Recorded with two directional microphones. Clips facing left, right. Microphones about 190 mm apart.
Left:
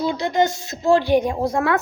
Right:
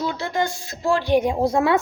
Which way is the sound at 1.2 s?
15° right (ahead or behind).